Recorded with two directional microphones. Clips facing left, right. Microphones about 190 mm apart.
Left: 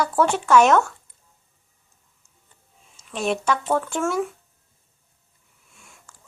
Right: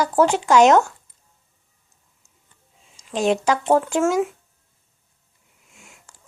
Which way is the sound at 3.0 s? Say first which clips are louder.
Right 5 dB; 30° right (ahead or behind).